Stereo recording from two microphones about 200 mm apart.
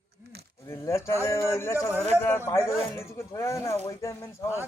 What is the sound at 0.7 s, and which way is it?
Speech, 15° left (ahead or behind).